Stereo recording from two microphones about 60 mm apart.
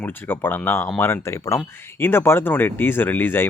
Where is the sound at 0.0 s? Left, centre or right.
Left.